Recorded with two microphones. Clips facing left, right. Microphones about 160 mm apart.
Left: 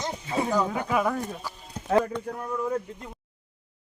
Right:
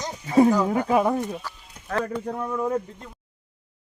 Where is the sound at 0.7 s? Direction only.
35° right (ahead or behind).